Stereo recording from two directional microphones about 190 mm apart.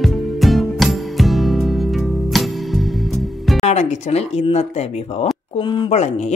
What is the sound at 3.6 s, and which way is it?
Speech, 35° left (ahead or behind).